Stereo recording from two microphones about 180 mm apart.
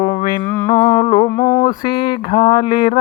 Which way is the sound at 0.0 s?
40° left (ahead or behind).